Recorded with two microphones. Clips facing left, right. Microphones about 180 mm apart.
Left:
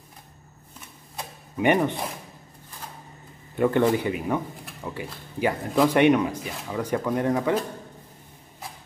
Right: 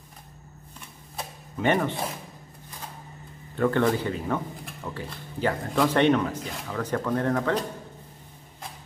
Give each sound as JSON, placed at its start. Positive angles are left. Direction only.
{"t": 1.6, "sound": "speech", "side_deg": 15}
{"t": 3.5, "sound": "speech", "side_deg": 15}